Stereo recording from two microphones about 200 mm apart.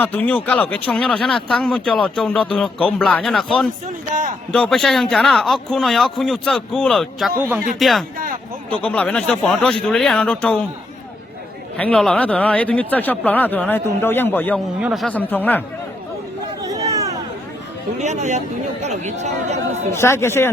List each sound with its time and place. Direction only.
0.0 s speech: 10° left (ahead or behind)
11.8 s speech: 5° left (ahead or behind)
14.8 s speech: 5° right (ahead or behind)
15.0 s speech: 10° left (ahead or behind)
16.6 s a sound: 15° right (ahead or behind)
18.0 s speech: 35° right (ahead or behind)
19.9 s speech: 10° left (ahead or behind)